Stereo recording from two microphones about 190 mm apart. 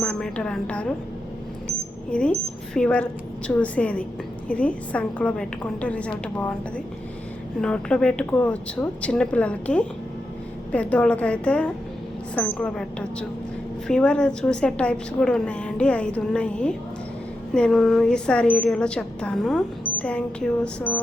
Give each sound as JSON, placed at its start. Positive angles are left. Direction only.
{"t": 0.0, "sound": "speech", "side_deg": 5}
{"t": 2.0, "sound": "a woman's voice", "side_deg": 5}